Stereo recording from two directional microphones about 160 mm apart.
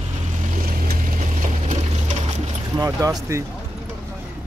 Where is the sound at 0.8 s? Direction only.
65° right (ahead or behind).